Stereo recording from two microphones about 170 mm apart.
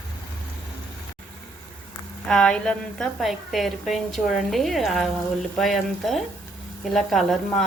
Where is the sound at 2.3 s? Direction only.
5° left (ahead or behind).